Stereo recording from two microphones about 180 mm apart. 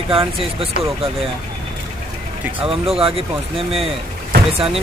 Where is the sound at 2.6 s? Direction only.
30° right (ahead or behind).